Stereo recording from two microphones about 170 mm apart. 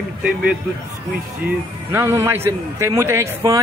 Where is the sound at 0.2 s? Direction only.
5° right (ahead or behind).